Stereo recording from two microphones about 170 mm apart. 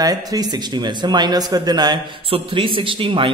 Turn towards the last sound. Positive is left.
turn(degrees=-30)  # may be behind; listen again after turning